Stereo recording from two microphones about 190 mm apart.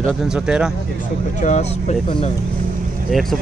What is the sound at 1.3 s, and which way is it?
Speech, 40° left (ahead or behind).